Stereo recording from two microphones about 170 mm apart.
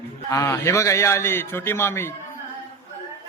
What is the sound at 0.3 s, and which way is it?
A man's voice, 15° left (ahead or behind).